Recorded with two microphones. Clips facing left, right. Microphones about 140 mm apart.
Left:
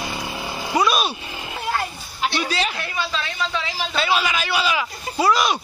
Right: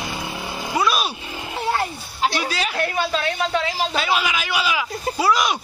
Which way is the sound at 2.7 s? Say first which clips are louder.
Right 5 dB; 55° right (ahead or behind).